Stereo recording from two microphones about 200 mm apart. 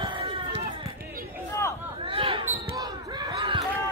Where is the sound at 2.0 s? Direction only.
25° right (ahead or behind).